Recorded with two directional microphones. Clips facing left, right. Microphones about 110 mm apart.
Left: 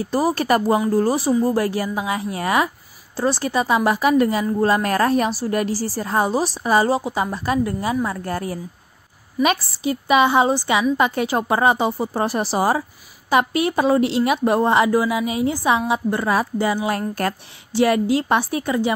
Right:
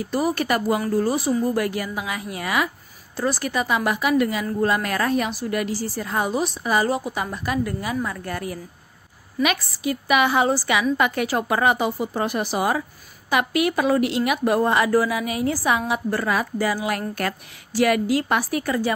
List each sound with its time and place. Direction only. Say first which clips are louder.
0.0 s a woman's voice: left 3 dB; 35° left (ahead or behind)